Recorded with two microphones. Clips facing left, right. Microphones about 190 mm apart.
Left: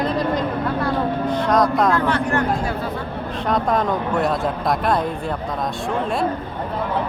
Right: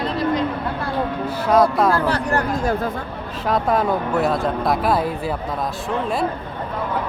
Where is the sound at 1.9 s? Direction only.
35° right (ahead or behind).